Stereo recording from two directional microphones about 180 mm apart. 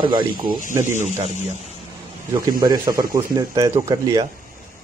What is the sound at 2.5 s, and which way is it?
Speech, 20° right (ahead or behind).